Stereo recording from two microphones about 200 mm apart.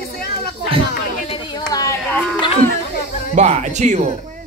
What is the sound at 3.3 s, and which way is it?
Speech, 35° right (ahead or behind).